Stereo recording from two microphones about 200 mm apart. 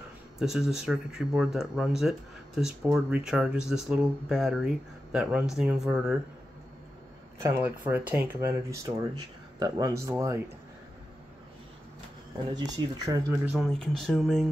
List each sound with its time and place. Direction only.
0.4 s speech: centre (ahead or behind)
7.3 s speech: 10° right (ahead or behind)
12.5 s speech: 20° right (ahead or behind)
13.5 s speech: centre (ahead or behind)